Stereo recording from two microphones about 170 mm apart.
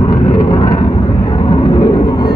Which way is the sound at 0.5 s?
25° left (ahead or behind).